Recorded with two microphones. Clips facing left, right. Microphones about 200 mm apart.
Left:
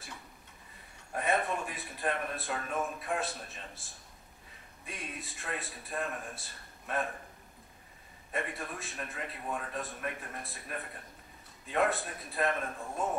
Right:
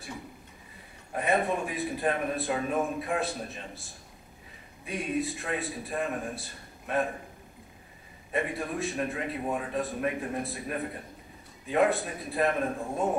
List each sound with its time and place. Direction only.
1.1 s a man's voice: centre (ahead or behind)
8.3 s a man's voice: centre (ahead or behind)
12.8 s speech: 15° right (ahead or behind)